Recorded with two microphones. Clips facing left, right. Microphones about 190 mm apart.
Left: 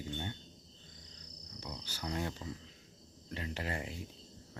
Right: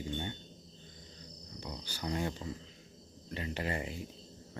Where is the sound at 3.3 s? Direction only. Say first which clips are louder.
Right 3 dB; centre (ahead or behind).